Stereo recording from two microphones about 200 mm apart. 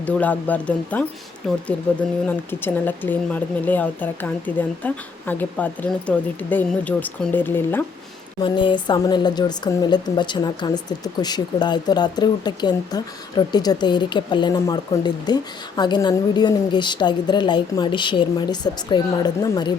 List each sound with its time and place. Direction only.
0.0 s speech: 10° left (ahead or behind)
8.4 s a woman's voice: 25° left (ahead or behind)